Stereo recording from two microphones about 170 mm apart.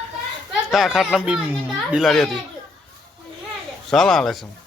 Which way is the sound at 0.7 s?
Centre (ahead or behind).